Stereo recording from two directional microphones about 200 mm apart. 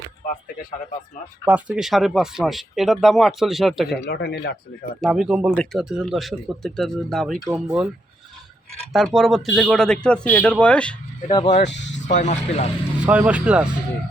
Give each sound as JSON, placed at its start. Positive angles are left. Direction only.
{"t": 1.5, "sound": "speech", "side_deg": -5}
{"t": 4.0, "sound": "speech", "side_deg": 55}
{"t": 4.9, "sound": "speech", "side_deg": 0}
{"t": 8.9, "sound": "speech", "side_deg": 0}
{"t": 11.3, "sound": "speech", "side_deg": 25}
{"t": 13.0, "sound": "speech", "side_deg": -5}